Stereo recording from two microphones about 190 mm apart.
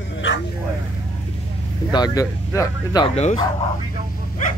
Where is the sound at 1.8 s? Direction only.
20° left (ahead or behind).